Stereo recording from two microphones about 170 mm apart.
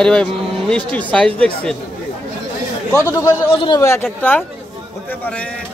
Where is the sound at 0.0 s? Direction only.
5° left (ahead or behind).